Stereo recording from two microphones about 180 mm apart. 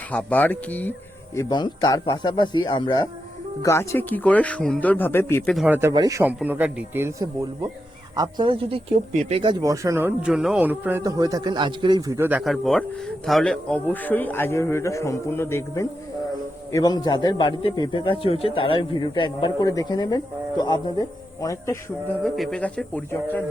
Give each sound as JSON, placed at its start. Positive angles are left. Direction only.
{"t": 0.1, "sound": "speech", "side_deg": 10}
{"t": 1.4, "sound": "a man's voice", "side_deg": 25}
{"t": 5.5, "sound": "speech", "side_deg": -10}
{"t": 5.9, "sound": "speech", "side_deg": -20}
{"t": 12.4, "sound": "a man's voice", "side_deg": 0}
{"t": 22.2, "sound": "speech", "side_deg": 0}